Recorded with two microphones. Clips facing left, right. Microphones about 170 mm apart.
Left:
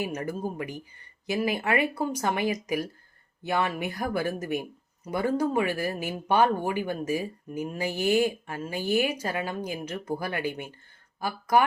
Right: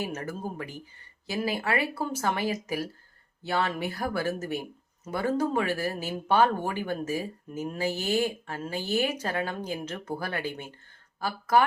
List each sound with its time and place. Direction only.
0.0 s speech: 15° left (ahead or behind)